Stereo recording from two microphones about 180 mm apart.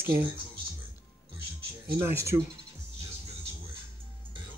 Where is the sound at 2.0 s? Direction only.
15° right (ahead or behind).